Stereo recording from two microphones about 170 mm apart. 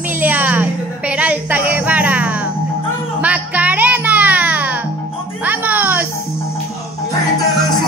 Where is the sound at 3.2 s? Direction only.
10° right (ahead or behind).